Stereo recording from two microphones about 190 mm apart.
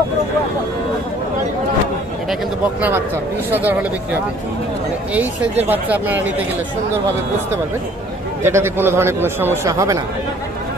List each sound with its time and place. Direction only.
3.4 s a man's voice: 10° right (ahead or behind)
5.1 s a man's voice: 10° right (ahead or behind)
8.4 s a man's voice: 15° right (ahead or behind)